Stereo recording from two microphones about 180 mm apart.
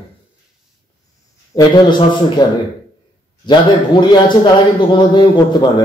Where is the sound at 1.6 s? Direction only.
25° left (ahead or behind).